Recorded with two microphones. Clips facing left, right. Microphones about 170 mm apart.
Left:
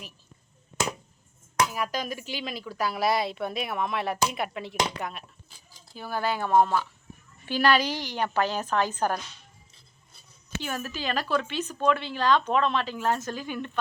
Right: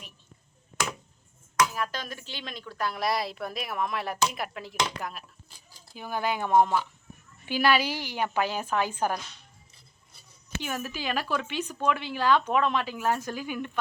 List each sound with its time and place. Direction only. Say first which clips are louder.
1.7 s speech: left 3 dB; 10° left (ahead or behind)
5.9 s speech: left 1 dB; 15° right (ahead or behind)
10.6 s speech: even; 15° right (ahead or behind)